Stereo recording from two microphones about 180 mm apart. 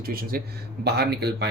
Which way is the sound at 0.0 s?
55° right (ahead or behind).